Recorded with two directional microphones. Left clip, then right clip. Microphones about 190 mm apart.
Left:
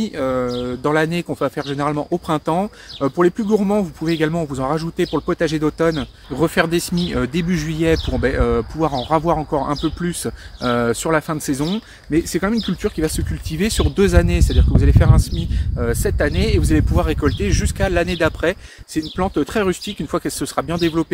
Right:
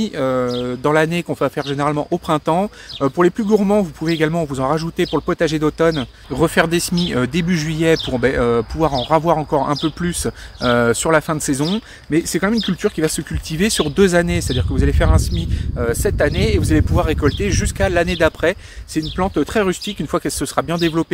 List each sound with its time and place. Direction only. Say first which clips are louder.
0.0 s speech: right 2 dB; 30° right (ahead or behind)